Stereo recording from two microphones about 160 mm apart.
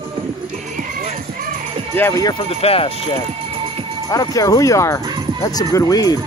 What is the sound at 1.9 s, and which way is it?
Speech, 15° left (ahead or behind).